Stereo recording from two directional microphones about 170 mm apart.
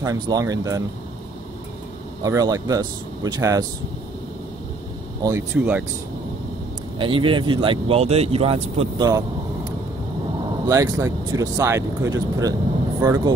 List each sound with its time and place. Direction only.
0.0 s speech: 20° right (ahead or behind)
2.2 s speech: 20° right (ahead or behind)
5.2 s speech: 10° right (ahead or behind)
7.0 s speech: 30° right (ahead or behind)
10.7 s speech: 20° right (ahead or behind)